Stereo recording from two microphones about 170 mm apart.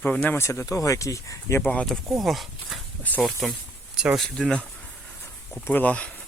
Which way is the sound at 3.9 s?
5° right (ahead or behind).